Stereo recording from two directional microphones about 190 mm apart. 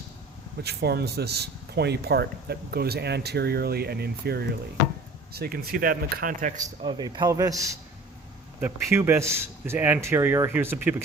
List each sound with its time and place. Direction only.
0.6 s speech: 60° right (ahead or behind)
6.8 s a man's voice: 25° right (ahead or behind)